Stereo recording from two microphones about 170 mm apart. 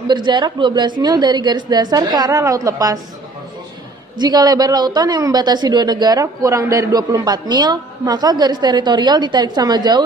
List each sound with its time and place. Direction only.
0.1 s a woman's voice: 25° right (ahead or behind)
4.2 s a woman's voice: 25° right (ahead or behind)